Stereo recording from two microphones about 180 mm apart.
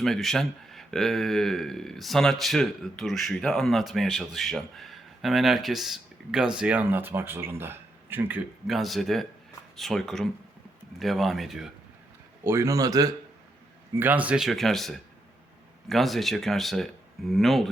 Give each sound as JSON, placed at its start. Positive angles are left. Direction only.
{"t": 0.0, "sound": "speech", "side_deg": 0}
{"t": 8.6, "sound": "speech", "side_deg": 0}
{"t": 12.4, "sound": "speech", "side_deg": -15}